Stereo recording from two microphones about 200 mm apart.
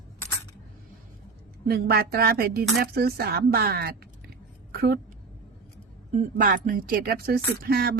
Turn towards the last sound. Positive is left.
turn(degrees=-50)  # may be behind; listen again after turning